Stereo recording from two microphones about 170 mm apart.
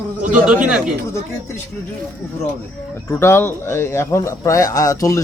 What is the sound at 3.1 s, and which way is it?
Speech, 15° left (ahead or behind).